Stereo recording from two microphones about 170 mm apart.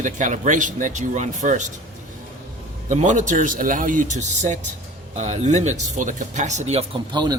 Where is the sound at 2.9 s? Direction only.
45° right (ahead or behind).